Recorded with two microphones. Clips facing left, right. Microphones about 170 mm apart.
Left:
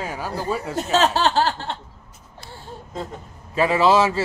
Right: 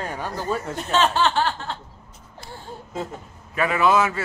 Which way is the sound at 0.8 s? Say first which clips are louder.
Left 2 dB; 40° left (ahead or behind).